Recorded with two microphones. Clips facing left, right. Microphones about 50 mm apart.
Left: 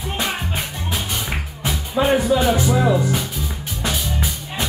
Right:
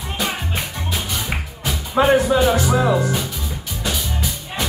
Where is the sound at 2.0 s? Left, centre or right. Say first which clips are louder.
Right 3 dB; right.